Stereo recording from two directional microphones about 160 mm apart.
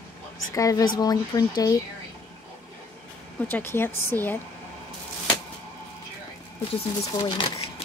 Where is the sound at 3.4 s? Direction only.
15° left (ahead or behind).